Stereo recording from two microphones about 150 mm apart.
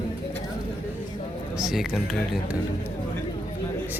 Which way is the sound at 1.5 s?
5° right (ahead or behind).